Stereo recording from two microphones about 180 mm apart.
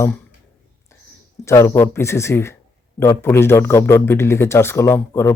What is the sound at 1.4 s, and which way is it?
A man's voice, 15° left (ahead or behind).